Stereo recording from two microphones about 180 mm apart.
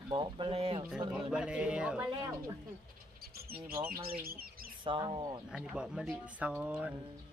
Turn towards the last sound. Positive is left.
turn(degrees=-5)  # may be behind; listen again after turning